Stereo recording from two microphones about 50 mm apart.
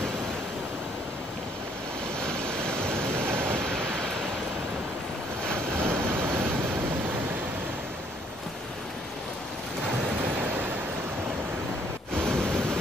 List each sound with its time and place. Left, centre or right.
2.1 s waves: centre
5.8 s vehicle: right
12.3 s pink noise: centre